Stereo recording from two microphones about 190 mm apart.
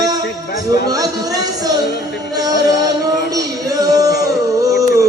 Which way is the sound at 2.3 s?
20° right (ahead or behind).